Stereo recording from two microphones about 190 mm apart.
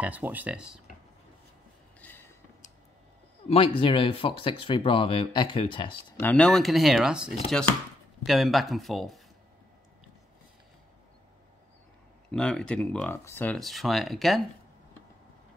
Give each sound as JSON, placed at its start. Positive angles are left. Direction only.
{"t": 0.0, "sound": "speech", "side_deg": -10}
{"t": 2.0, "sound": "a sound", "side_deg": 10}
{"t": 3.4, "sound": "speech", "side_deg": 30}
{"t": 6.1, "sound": "speech", "side_deg": 10}
{"t": 12.3, "sound": "speech", "side_deg": 5}